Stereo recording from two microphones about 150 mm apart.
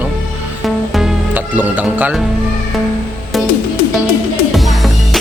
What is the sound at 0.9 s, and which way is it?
Music, 5° right (ahead or behind).